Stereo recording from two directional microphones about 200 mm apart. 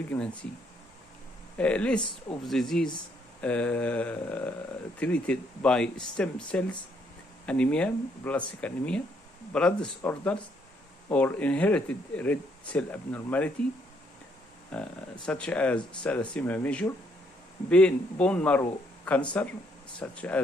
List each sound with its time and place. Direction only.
0.1 s speech: 10° left (ahead or behind)
1.6 s speech: 5° left (ahead or behind)
2.0 s speech: 20° left (ahead or behind)
2.4 s speech: centre (ahead or behind)
14.7 s speech: 5° left (ahead or behind)